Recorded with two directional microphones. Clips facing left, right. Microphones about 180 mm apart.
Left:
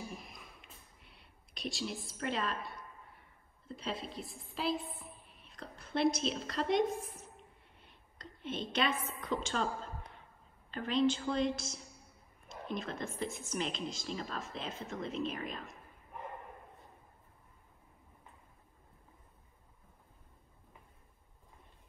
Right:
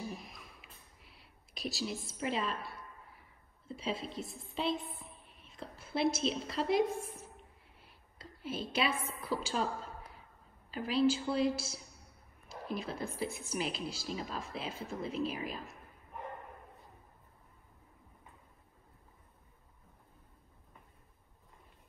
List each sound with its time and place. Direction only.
0.1 s a sound: centre (ahead or behind)
10.7 s a woman's voice: 5° right (ahead or behind)
12.6 s speech: 5° right (ahead or behind)